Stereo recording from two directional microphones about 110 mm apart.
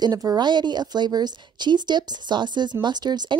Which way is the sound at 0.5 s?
40° right (ahead or behind).